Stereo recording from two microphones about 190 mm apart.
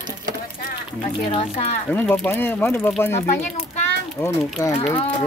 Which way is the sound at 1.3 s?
30° left (ahead or behind).